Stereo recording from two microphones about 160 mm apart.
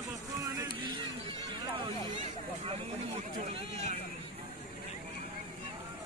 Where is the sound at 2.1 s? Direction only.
45° right (ahead or behind).